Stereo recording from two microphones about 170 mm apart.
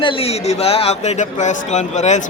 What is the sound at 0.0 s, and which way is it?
Speech, 35° left (ahead or behind).